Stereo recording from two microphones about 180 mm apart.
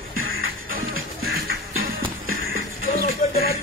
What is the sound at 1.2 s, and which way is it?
Music, 60° right (ahead or behind).